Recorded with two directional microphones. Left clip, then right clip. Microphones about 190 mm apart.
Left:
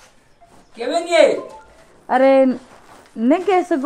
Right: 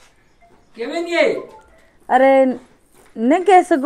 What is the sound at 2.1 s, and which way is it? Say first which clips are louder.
Speech: right 1 dB; 20° left (ahead or behind).